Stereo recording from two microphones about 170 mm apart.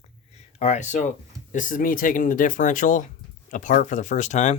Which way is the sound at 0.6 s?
45° left (ahead or behind).